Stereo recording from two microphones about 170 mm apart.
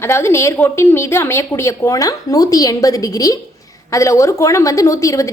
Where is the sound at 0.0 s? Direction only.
15° left (ahead or behind).